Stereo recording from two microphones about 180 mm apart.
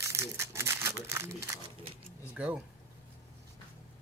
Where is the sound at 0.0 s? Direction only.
15° right (ahead or behind).